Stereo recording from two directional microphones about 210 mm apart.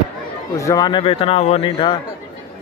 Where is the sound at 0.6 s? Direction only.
15° left (ahead or behind).